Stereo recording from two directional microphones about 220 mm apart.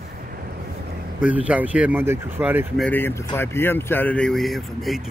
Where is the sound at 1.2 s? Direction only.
5° right (ahead or behind).